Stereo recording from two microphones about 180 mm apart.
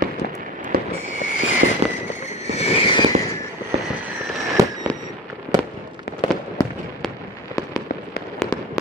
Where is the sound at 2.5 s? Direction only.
35° left (ahead or behind).